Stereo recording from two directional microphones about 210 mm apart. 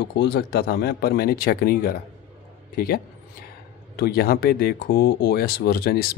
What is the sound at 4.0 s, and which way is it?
Speech, 50° left (ahead or behind).